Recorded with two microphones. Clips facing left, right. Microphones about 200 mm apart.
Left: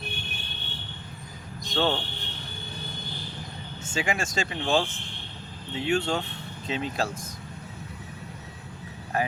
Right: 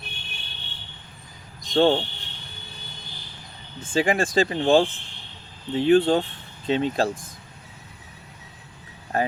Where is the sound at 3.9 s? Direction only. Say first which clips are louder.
Right 8 dB; 35° right (ahead or behind).